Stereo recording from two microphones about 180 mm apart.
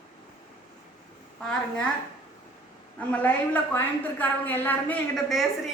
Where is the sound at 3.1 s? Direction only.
10° left (ahead or behind).